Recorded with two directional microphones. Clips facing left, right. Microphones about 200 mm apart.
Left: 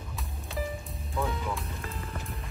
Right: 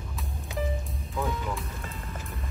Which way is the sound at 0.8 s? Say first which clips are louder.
Right 1 dB; centre (ahead or behind).